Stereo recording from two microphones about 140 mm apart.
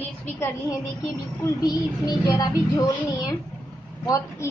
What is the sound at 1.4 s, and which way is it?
A child's voice, 25° left (ahead or behind).